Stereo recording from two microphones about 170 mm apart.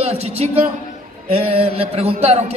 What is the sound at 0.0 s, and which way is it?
A man's voice, 35° right (ahead or behind).